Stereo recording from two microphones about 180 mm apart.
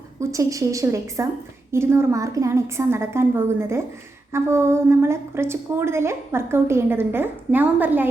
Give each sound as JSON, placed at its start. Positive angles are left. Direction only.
{"t": 0.2, "sound": "a woman's voice", "side_deg": -15}